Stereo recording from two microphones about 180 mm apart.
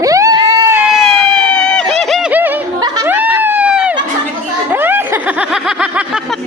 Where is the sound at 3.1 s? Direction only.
10° right (ahead or behind).